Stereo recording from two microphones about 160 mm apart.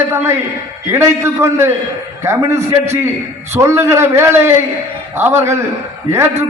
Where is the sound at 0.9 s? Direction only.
15° right (ahead or behind).